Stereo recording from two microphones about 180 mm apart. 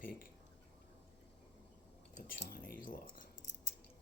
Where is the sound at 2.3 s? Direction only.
55° left (ahead or behind).